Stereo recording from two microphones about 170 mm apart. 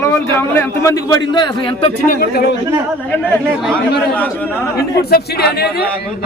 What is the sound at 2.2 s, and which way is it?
Speech, 65° left (ahead or behind).